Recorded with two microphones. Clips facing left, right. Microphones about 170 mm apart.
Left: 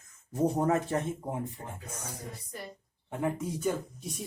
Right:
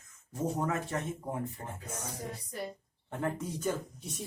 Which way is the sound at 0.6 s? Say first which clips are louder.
Left 5 dB; 35° left (ahead or behind).